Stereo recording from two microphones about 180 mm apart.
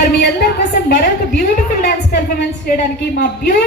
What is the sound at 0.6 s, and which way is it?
A woman's voice, 60° left (ahead or behind).